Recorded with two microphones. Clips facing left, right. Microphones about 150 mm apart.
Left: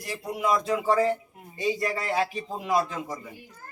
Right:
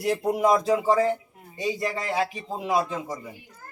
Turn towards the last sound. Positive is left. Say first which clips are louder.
# right 1 dB
turn(degrees=-20)  # may be behind; listen again after turning